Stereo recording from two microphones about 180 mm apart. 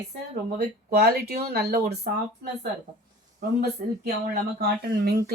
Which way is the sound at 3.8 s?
60° right (ahead or behind).